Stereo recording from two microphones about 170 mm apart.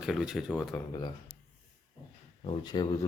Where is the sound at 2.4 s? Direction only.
25° left (ahead or behind).